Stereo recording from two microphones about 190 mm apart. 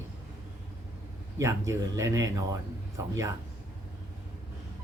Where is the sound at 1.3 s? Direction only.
15° right (ahead or behind).